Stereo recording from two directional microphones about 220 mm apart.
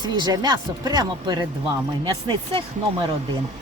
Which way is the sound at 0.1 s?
20° right (ahead or behind).